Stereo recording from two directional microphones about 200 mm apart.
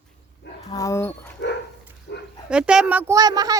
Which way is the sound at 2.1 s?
65° left (ahead or behind).